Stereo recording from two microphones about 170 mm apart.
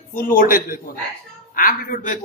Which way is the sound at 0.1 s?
55° left (ahead or behind).